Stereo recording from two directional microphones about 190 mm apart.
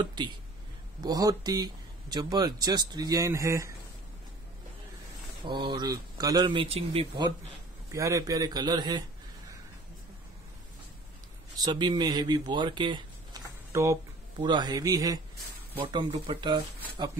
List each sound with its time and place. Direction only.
0.0 s speech: 25° right (ahead or behind)
5.4 s speech: 25° right (ahead or behind)
7.9 s speech: 15° right (ahead or behind)
11.6 s speech: 20° right (ahead or behind)